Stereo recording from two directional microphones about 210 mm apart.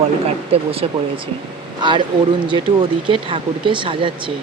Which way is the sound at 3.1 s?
25° right (ahead or behind).